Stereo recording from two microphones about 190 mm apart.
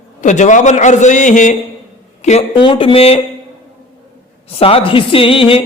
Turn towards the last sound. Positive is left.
turn(degrees=30)  # may be behind; listen again after turning